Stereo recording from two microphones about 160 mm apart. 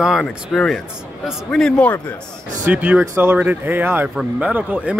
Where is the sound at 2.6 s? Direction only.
10° right (ahead or behind).